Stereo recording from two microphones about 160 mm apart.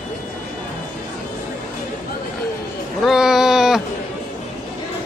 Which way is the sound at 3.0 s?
Centre (ahead or behind).